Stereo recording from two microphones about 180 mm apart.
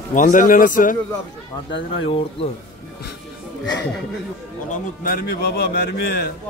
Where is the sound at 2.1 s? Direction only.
30° left (ahead or behind).